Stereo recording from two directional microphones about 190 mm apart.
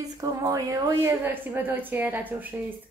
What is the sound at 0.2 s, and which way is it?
A woman's voice, 20° right (ahead or behind).